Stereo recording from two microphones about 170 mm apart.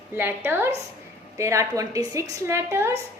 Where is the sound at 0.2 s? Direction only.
10° right (ahead or behind).